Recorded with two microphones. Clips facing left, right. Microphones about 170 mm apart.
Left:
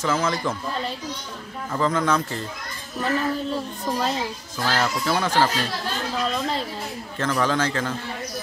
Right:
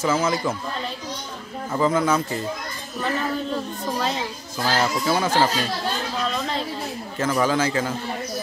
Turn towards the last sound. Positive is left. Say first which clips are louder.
# right 2 dB
turn(degrees=-10)  # may be behind; listen again after turning